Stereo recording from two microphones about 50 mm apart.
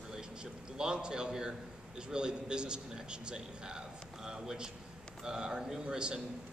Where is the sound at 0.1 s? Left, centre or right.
Centre.